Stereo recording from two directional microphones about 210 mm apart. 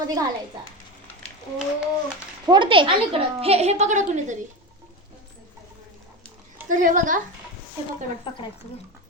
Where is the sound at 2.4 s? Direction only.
20° right (ahead or behind).